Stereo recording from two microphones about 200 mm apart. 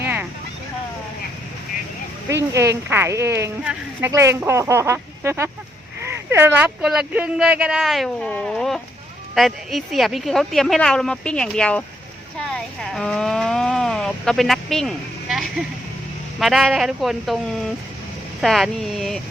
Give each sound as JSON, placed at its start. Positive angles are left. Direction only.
{"t": 2.3, "sound": "speech", "side_deg": -15}